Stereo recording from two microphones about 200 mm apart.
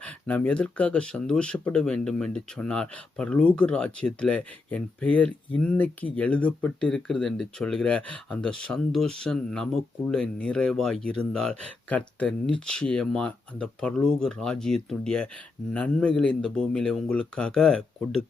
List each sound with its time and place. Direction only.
0.0 s speech: 5° left (ahead or behind)